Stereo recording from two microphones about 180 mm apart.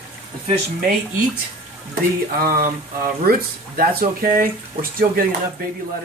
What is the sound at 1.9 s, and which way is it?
Speech, 55° right (ahead or behind).